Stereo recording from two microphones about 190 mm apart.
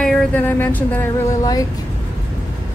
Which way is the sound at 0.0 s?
5° left (ahead or behind).